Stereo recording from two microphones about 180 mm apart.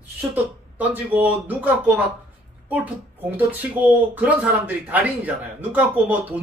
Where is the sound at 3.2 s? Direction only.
10° right (ahead or behind).